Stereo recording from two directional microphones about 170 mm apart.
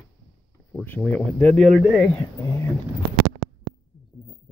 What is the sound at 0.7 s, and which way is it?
Speech, 10° left (ahead or behind).